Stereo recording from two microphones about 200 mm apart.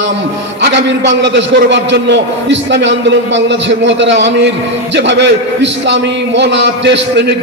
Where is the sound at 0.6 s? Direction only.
65° right (ahead or behind).